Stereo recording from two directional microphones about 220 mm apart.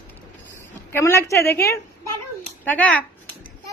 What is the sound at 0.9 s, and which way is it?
A woman's voice, 10° left (ahead or behind).